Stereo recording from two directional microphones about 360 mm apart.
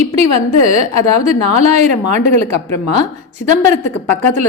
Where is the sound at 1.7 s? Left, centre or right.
Centre.